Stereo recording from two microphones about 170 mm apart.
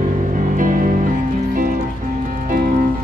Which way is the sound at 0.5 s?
50° right (ahead or behind).